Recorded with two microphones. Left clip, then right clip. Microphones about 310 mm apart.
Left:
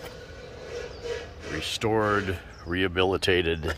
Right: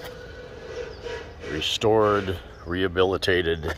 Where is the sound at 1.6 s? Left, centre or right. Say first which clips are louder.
Right 6 dB; centre.